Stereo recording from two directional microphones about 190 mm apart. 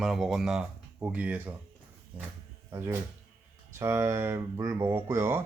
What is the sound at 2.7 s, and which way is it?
Speech, 15° right (ahead or behind).